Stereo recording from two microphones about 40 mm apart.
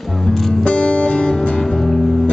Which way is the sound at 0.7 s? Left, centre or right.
Left.